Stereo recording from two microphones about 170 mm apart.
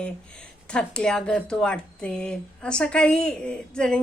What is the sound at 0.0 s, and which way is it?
Speech, 5° left (ahead or behind).